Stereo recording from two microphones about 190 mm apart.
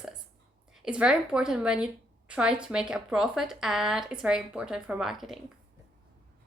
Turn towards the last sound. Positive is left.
turn(degrees=0)  # may be behind; listen again after turning